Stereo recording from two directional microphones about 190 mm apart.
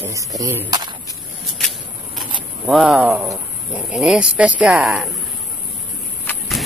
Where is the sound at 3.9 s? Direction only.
5° right (ahead or behind).